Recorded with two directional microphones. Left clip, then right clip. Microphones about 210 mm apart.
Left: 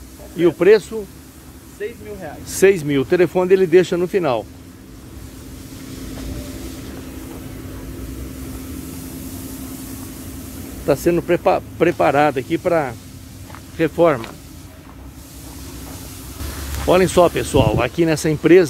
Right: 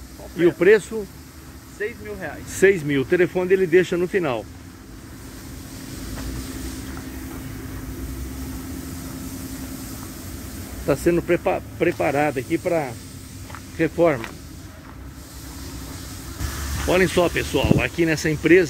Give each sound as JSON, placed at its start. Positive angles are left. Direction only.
{"t": 0.4, "sound": "speech", "side_deg": 10}
{"t": 1.8, "sound": "speech", "side_deg": -10}
{"t": 2.6, "sound": "speech", "side_deg": 10}
{"t": 10.9, "sound": "speech", "side_deg": 10}
{"t": 16.8, "sound": "speech", "side_deg": 15}